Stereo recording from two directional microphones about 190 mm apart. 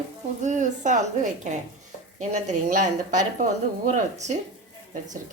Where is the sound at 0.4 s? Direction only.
40° right (ahead or behind).